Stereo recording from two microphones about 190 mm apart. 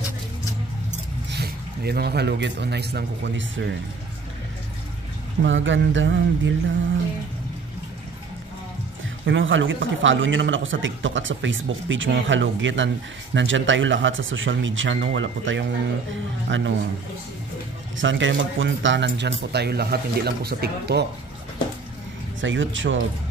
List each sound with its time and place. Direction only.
1.3 s a man's voice: 55° right (ahead or behind); by 3.7 s 75° right (ahead or behind)
5.4 s a man's voice: 80° right
9.2 s a man's voice: 80° right
17.9 s speech: 80° right; by 21.0 s 55° right (ahead or behind)
22.4 s a man's voice: 80° right